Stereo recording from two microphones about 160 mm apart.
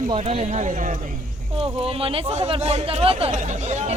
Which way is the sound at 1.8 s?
35° right (ahead or behind).